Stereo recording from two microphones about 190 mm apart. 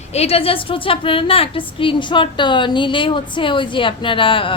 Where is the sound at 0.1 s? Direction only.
35° left (ahead or behind).